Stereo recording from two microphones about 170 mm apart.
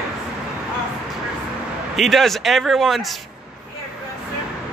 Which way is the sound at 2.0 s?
Centre (ahead or behind).